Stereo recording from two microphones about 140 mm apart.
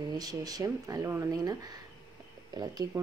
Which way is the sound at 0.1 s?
30° right (ahead or behind).